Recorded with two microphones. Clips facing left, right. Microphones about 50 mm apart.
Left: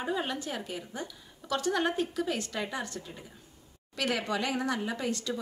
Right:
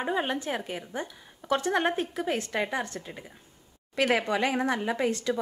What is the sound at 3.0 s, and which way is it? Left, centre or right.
Speech, right.